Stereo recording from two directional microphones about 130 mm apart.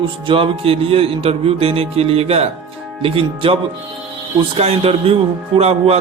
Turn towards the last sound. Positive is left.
turn(degrees=-50)  # may be behind; listen again after turning